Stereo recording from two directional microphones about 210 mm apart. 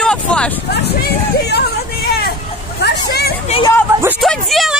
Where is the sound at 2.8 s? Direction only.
50° left (ahead or behind).